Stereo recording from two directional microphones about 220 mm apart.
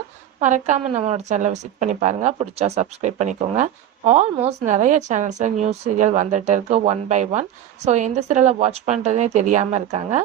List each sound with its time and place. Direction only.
0.3 s a woman's voice: 30° right (ahead or behind)